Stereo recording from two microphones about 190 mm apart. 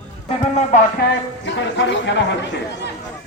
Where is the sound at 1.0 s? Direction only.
65° left (ahead or behind).